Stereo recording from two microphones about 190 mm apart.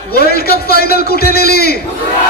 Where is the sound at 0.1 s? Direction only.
55° left (ahead or behind).